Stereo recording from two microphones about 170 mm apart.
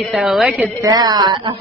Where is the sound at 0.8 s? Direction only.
25° right (ahead or behind).